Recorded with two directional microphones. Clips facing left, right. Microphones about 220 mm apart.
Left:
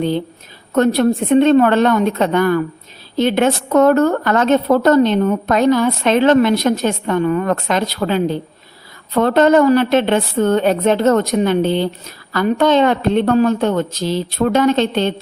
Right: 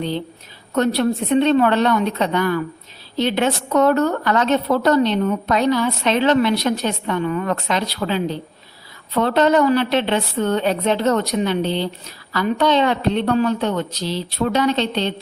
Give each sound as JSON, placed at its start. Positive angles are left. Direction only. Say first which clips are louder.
{"t": 0.7, "sound": "a woman's voice", "louder": "left 4 dB", "side_deg": 50}